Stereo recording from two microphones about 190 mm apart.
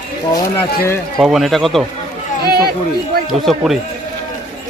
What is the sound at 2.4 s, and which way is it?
Speech, 55° right (ahead or behind).